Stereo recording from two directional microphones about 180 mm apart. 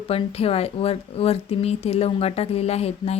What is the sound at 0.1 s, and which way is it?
Speech, 35° left (ahead or behind).